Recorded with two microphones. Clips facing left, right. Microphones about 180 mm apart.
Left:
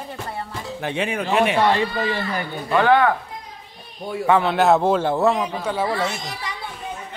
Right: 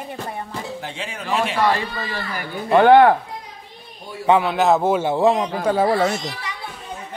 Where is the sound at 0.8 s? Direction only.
60° left (ahead or behind).